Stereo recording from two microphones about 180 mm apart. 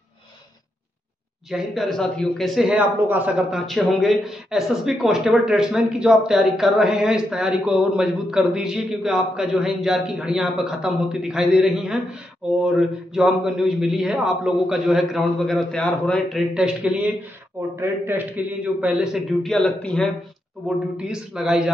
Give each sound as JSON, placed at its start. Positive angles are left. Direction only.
{"t": 1.5, "sound": "speech", "side_deg": 0}